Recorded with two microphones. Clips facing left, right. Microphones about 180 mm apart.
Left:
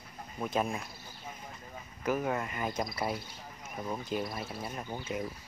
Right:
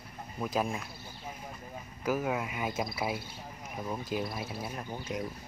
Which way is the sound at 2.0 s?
5° right (ahead or behind).